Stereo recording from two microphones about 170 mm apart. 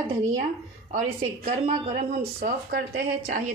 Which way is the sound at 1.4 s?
55° right (ahead or behind).